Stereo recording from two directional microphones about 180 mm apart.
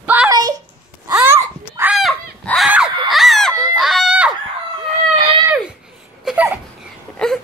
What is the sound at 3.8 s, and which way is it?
Fowl, centre (ahead or behind).